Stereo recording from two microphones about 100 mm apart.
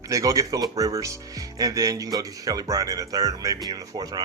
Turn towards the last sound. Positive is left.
turn(degrees=-40)  # may be behind; listen again after turning